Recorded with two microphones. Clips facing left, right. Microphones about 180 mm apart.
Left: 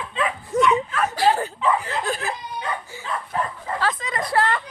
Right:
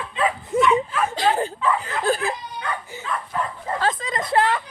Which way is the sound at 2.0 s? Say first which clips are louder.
Right 4 dB; 35° right (ahead or behind).